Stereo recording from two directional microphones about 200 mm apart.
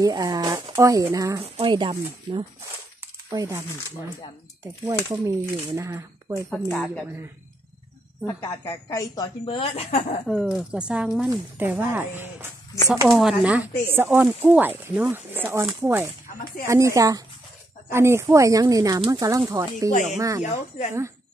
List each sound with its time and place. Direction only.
0.0 s speech: 15° right (ahead or behind)
4.8 s speech: 15° right (ahead or behind)
6.5 s speech: 5° left (ahead or behind)
8.3 s a woman's voice: 15° left (ahead or behind); by 10.2 s 35° left (ahead or behind)
10.2 s speech: centre (ahead or behind); by 20.4 s 15° right (ahead or behind)